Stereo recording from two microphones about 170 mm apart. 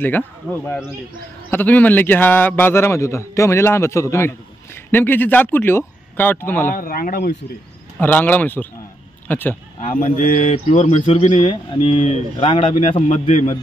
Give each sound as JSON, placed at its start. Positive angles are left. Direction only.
{"t": 0.0, "sound": "a man's voice", "side_deg": 10}
{"t": 6.7, "sound": "speech", "side_deg": 55}
{"t": 8.0, "sound": "a man's voice", "side_deg": 10}
{"t": 9.8, "sound": "speech", "side_deg": 45}